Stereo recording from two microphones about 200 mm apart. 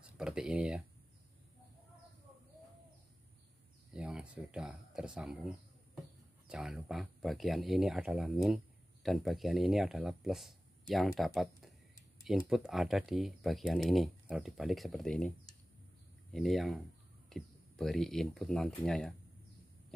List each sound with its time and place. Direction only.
0.2 s speech: 5° right (ahead or behind)
3.9 s speech: 5° right (ahead or behind)